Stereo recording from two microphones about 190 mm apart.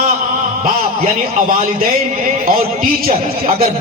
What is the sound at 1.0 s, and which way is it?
Speech, 45° right (ahead or behind).